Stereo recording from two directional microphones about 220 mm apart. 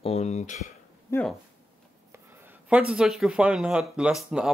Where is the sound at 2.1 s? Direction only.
10° right (ahead or behind).